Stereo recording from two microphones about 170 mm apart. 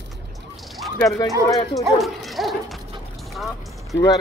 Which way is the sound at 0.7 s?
Centre (ahead or behind).